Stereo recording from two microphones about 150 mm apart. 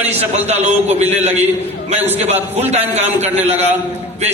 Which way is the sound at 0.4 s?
45° right (ahead or behind).